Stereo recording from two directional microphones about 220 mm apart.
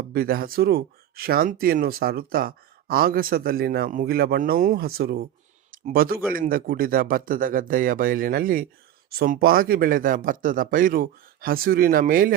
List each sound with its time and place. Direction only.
0.1 s speech: 40° right (ahead or behind)